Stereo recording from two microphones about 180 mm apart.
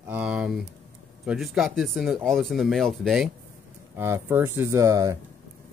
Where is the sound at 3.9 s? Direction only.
15° right (ahead or behind).